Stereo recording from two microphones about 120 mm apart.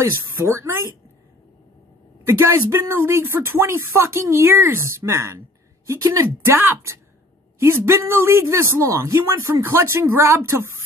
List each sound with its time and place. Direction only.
0.0 s speech: 20° right (ahead or behind)
2.2 s speech: 25° right (ahead or behind)